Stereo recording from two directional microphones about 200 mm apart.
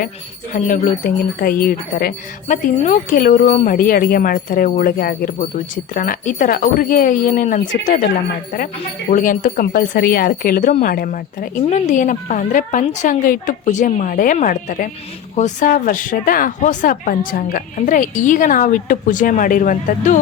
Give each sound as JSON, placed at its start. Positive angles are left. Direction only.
{"t": 0.5, "sound": "speech", "side_deg": 40}